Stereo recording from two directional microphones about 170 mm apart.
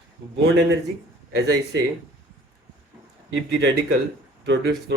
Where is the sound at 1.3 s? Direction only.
75° right (ahead or behind).